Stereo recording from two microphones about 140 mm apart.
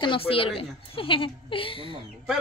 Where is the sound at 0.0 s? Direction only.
40° left (ahead or behind).